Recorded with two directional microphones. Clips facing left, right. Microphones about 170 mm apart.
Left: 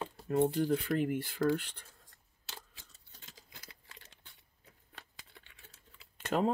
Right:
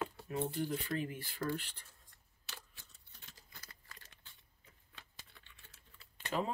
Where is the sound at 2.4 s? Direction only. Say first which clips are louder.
Left 3 dB; 90° left.